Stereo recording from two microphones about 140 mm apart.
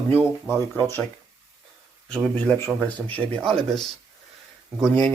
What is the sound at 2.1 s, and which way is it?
Speech, 5° left (ahead or behind).